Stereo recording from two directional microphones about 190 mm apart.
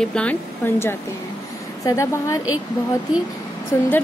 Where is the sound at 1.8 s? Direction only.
15° left (ahead or behind).